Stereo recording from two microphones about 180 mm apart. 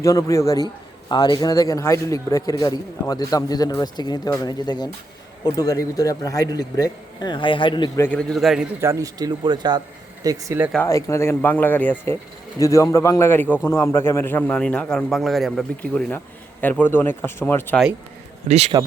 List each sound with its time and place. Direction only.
0.0 s a man's voice: 15° left (ahead or behind)
8.0 s a man's voice: 5° left (ahead or behind)
8.8 s speech: 15° right (ahead or behind)
10.8 s a man's voice: 15° left (ahead or behind)
18.4 s a man's voice: 40° right (ahead or behind)